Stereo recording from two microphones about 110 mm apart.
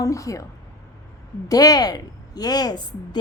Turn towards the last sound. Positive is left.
turn(degrees=40)  # may be behind; listen again after turning